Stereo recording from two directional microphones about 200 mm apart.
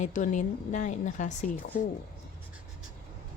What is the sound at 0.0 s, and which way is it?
Speech, 40° left (ahead or behind).